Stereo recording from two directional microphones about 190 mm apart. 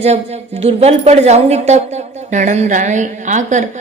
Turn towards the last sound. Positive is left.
turn(degrees=-40)  # may be behind; listen again after turning